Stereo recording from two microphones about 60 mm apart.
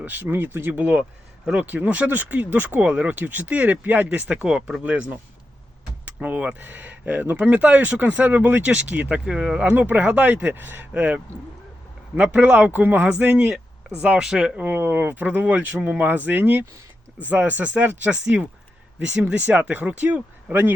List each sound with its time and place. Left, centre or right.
0.0 s speech: right
6.1 s speech: right
9.7 s speech: right
10.9 s speech: right
14.2 s speech: centre
14.5 s speech: right